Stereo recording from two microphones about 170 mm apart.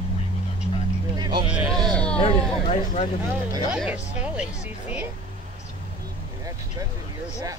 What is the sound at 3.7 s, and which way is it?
Speech, 5° right (ahead or behind).